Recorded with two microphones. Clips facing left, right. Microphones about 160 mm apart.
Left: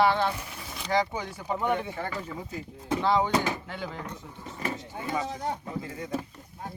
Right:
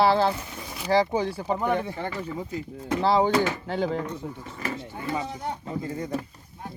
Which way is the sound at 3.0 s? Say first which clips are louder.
Right 4 dB; 35° right (ahead or behind).